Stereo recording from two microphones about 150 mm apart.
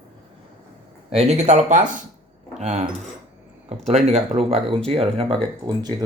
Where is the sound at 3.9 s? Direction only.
50° right (ahead or behind).